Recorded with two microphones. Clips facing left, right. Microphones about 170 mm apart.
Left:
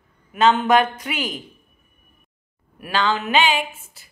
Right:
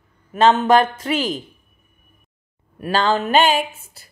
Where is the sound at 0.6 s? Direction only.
30° right (ahead or behind).